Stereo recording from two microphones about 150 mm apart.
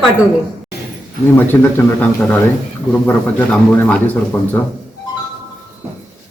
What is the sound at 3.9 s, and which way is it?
Speech, 10° left (ahead or behind).